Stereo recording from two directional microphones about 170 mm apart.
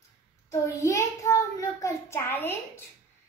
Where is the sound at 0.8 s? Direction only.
15° left (ahead or behind).